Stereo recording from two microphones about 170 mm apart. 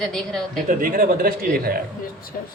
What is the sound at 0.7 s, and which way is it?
Speech, 55° right (ahead or behind).